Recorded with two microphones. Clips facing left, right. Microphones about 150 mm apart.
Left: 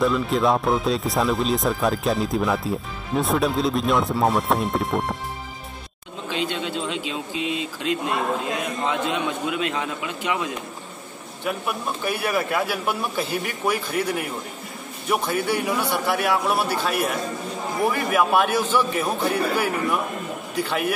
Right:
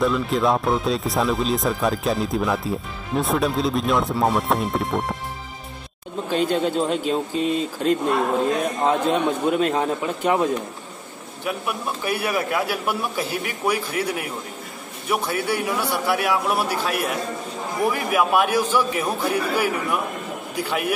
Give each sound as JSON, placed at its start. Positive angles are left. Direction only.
{"t": 0.0, "sound": "speech", "side_deg": 0}
{"t": 6.2, "sound": "a man's voice", "side_deg": -45}
{"t": 11.4, "sound": "a man's voice", "side_deg": -5}
{"t": 17.9, "sound": "a man's voice", "side_deg": -10}